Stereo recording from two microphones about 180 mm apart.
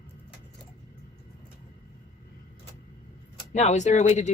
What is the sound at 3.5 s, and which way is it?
Speech, 40° left (ahead or behind).